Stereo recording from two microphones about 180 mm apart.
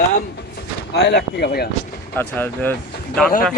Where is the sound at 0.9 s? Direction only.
70° left (ahead or behind).